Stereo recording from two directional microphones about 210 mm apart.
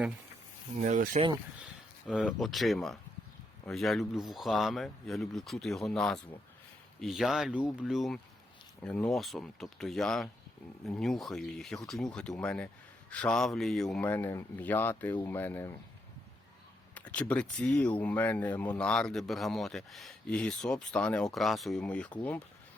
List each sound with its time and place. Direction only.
0.8 s speech: 40° right (ahead or behind)
2.0 s speech: centre (ahead or behind)
16.9 s speech: 5° left (ahead or behind)